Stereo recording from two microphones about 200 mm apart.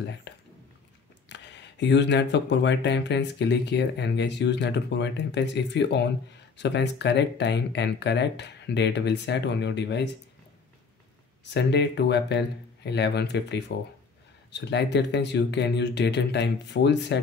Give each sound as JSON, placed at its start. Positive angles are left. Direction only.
{"t": 0.3, "sound": "a sound", "side_deg": 60}
{"t": 1.3, "sound": "speech", "side_deg": 60}
{"t": 11.5, "sound": "speech", "side_deg": 60}